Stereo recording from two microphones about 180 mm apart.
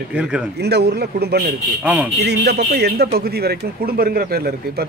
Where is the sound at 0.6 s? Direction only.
65° right (ahead or behind).